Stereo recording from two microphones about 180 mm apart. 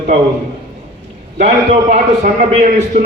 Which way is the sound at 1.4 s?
40° right (ahead or behind).